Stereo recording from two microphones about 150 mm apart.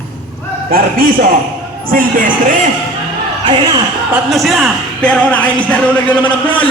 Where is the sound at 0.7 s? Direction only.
75° right (ahead or behind).